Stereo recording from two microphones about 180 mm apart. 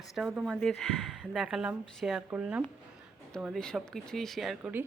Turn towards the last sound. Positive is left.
turn(degrees=-10)  # may be behind; listen again after turning